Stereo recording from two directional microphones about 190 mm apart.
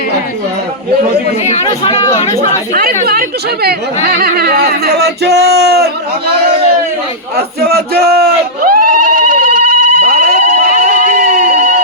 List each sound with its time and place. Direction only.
1.6 s speech: 25° left (ahead or behind)
3.1 s speech: 55° right (ahead or behind)
7.3 s a sound: 55° right (ahead or behind)